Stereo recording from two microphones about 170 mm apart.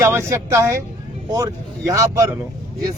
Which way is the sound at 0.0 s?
15° right (ahead or behind).